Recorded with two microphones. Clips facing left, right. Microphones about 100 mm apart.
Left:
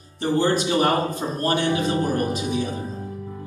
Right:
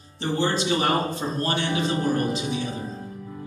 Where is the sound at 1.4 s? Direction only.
50° left (ahead or behind).